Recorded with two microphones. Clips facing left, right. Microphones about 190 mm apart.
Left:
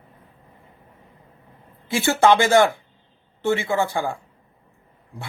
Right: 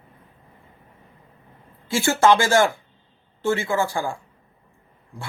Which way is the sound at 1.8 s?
20° left (ahead or behind).